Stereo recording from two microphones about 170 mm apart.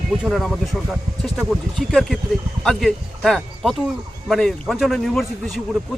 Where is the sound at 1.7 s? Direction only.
Centre (ahead or behind).